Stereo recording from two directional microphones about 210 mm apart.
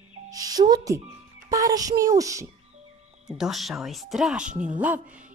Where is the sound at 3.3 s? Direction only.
Centre (ahead or behind).